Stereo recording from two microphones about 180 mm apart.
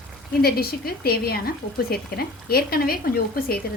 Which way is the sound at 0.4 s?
60° left (ahead or behind).